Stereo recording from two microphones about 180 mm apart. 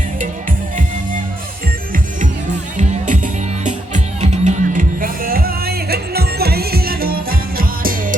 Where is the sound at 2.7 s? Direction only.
45° right (ahead or behind).